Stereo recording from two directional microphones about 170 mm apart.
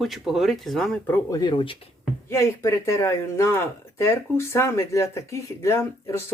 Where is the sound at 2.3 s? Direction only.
15° left (ahead or behind).